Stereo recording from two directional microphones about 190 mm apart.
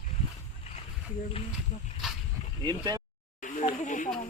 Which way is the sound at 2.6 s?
20° right (ahead or behind).